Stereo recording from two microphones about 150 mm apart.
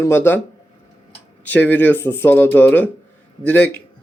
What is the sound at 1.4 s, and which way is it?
Speech, 10° left (ahead or behind).